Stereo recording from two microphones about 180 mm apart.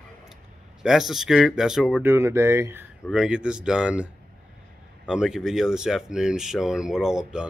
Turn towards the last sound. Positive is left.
turn(degrees=-5)  # may be behind; listen again after turning